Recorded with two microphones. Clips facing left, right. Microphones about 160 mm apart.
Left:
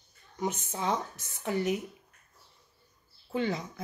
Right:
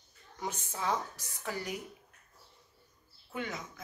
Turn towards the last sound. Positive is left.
turn(degrees=30)  # may be behind; listen again after turning